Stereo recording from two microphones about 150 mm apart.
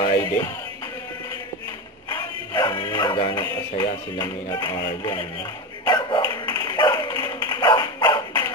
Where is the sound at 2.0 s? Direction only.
30° left (ahead or behind).